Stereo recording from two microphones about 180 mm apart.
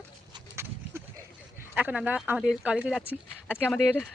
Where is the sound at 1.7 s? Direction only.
10° right (ahead or behind).